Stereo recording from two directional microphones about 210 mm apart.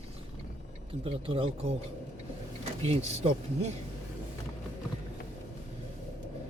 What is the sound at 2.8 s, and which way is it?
Speech, 30° right (ahead or behind).